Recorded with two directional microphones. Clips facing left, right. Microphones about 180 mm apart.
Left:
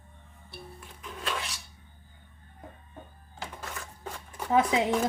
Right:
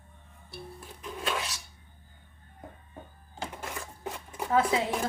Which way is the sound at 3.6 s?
15° right (ahead or behind).